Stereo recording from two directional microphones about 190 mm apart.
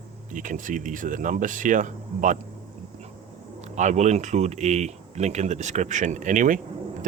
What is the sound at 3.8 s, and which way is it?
Speech, 40° right (ahead or behind).